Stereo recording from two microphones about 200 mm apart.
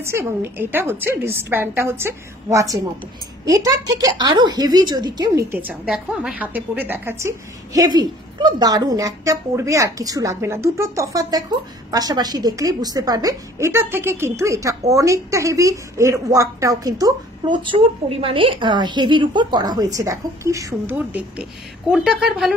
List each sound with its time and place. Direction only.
0.0 s speech: 10° right (ahead or behind)